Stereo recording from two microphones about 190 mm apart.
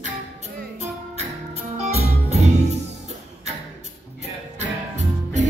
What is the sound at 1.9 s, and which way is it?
Music, 35° right (ahead or behind).